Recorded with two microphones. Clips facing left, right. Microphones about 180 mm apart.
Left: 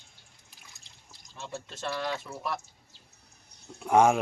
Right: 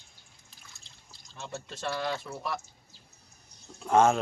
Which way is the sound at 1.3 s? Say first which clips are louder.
Even; centre (ahead or behind).